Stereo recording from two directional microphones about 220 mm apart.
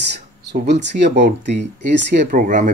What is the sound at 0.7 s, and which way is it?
Speech, 50° right (ahead or behind).